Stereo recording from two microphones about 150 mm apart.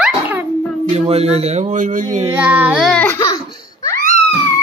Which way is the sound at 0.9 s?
45° right (ahead or behind).